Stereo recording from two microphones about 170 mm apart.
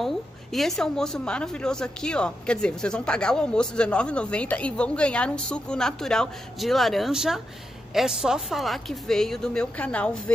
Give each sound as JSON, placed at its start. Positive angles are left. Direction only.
{"t": 0.0, "sound": "a woman's voice", "side_deg": 0}